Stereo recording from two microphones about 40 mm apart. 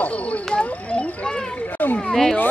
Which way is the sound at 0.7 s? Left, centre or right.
Left.